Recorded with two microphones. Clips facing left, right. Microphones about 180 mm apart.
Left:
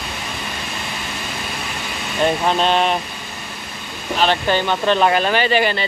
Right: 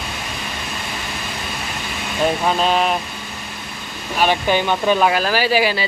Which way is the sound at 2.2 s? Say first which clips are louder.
Left 1 dB; 5° right (ahead or behind).